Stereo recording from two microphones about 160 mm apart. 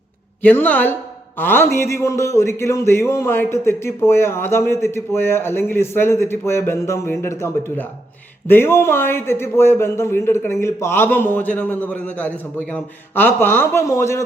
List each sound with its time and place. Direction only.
0.4 s a man's voice: 10° left (ahead or behind)